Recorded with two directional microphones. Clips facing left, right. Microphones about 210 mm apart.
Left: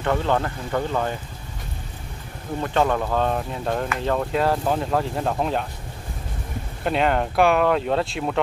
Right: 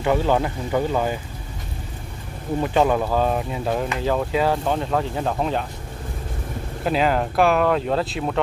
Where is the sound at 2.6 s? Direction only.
10° right (ahead or behind).